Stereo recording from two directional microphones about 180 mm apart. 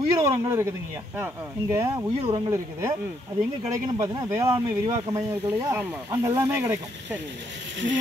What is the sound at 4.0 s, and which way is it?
Speech, 20° right (ahead or behind).